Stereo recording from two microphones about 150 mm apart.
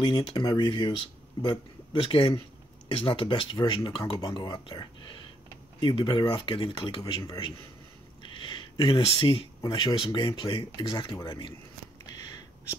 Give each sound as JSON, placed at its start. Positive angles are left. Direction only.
{"t": 0.0, "sound": "speech", "side_deg": 30}
{"t": 8.2, "sound": "a sound", "side_deg": 35}
{"t": 9.6, "sound": "speech", "side_deg": 25}